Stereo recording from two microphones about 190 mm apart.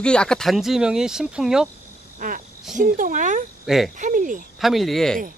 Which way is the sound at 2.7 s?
45° right (ahead or behind).